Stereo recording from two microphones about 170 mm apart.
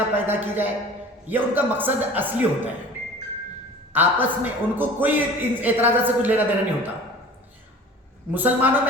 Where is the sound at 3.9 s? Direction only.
10° right (ahead or behind).